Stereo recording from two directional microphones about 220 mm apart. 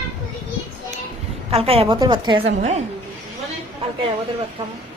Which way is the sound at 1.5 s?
25° right (ahead or behind).